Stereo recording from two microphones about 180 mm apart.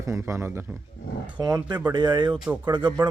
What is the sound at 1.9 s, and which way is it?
Speech, 25° right (ahead or behind).